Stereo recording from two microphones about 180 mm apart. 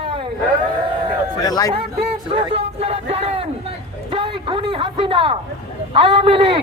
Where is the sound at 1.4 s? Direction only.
20° left (ahead or behind).